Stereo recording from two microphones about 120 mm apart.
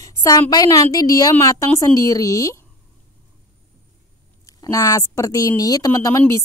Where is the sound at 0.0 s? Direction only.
30° left (ahead or behind).